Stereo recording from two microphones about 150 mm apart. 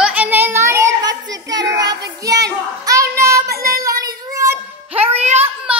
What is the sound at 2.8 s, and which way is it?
Child singing, 20° right (ahead or behind).